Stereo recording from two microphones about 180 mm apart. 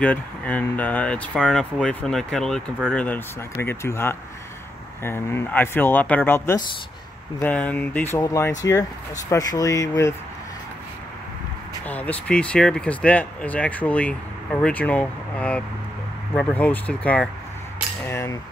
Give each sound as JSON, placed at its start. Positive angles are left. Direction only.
{"t": 0.0, "sound": "speech", "side_deg": 10}
{"t": 11.9, "sound": "speech", "side_deg": 10}